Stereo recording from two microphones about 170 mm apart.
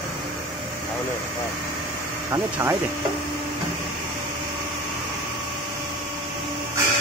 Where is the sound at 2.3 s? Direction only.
15° right (ahead or behind).